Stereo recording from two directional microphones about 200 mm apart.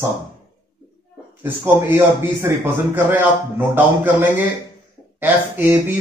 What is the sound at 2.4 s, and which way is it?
A man's voice, 10° right (ahead or behind).